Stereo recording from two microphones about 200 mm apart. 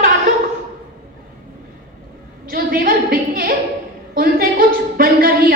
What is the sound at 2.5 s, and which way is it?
A woman's voice, 45° right (ahead or behind).